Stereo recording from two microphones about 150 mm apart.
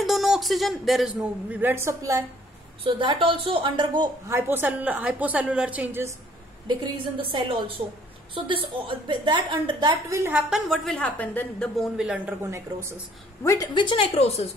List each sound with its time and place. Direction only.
0.0 s speech: centre (ahead or behind); by 2.2 s 20° right (ahead or behind)
2.8 s a woman's voice: 35° right (ahead or behind)
4.3 s a woman's voice: 15° right (ahead or behind)
6.8 s a woman's voice: 35° right (ahead or behind)
10.1 s a woman's voice: 15° right (ahead or behind)
10.5 s a woman's voice: centre (ahead or behind)
11.7 s speech: 5° right (ahead or behind)
12.4 s a woman's voice: 15° right (ahead or behind)
13.4 s speech: 20° left (ahead or behind)
13.7 s a woman's voice: 35° left (ahead or behind)